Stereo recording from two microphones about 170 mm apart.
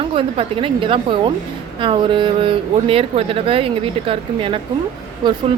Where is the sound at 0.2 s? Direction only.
30° right (ahead or behind).